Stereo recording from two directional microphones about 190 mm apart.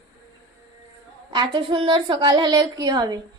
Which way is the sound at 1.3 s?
25° right (ahead or behind).